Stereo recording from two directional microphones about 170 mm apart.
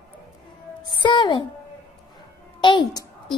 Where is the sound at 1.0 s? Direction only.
25° left (ahead or behind).